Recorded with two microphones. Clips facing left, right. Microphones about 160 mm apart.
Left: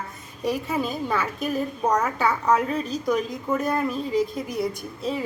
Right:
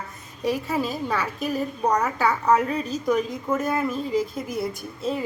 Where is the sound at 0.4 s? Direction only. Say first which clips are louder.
Right 1 dB; centre (ahead or behind).